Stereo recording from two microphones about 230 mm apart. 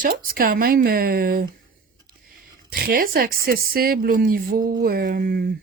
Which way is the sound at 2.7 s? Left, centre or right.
Right.